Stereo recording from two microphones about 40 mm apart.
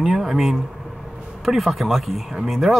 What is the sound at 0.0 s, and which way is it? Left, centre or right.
Speech, centre.